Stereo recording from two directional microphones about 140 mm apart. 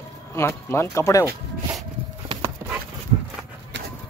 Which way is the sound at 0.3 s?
15° left (ahead or behind).